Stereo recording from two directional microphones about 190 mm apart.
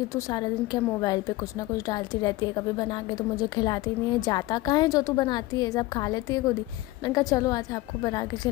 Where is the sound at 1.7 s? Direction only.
20° left (ahead or behind).